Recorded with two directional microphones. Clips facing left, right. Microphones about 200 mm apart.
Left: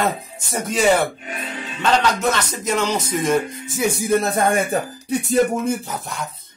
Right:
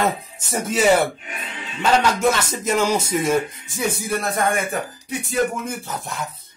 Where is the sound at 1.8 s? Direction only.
10° right (ahead or behind).